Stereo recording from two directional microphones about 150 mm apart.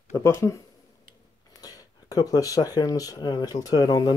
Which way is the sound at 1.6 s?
25° left (ahead or behind).